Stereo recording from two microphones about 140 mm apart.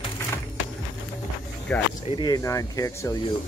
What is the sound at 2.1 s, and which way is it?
Speech, 30° left (ahead or behind).